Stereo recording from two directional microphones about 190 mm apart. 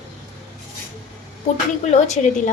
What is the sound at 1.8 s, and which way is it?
Speech, 35° left (ahead or behind).